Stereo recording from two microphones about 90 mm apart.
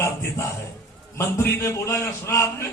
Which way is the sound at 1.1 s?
25° left (ahead or behind).